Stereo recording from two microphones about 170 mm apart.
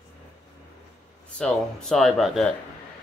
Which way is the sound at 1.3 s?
5° left (ahead or behind).